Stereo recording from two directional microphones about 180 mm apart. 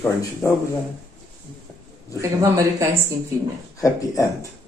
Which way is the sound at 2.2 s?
15° right (ahead or behind).